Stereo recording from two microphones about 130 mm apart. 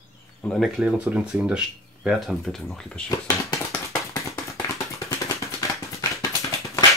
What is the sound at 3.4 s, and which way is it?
Tap, 25° left (ahead or behind).